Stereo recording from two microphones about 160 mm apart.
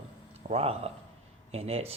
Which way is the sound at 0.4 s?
40° right (ahead or behind).